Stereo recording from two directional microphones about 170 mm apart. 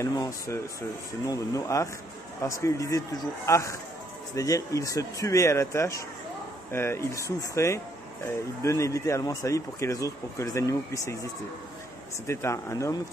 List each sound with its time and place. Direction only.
0.0 s speech: 15° left (ahead or behind)
12.3 s speech: 15° left (ahead or behind)